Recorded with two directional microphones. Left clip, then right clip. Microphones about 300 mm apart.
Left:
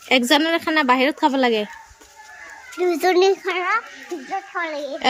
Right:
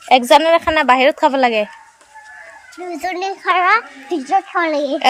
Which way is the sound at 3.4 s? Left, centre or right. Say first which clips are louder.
Right 9 dB; centre.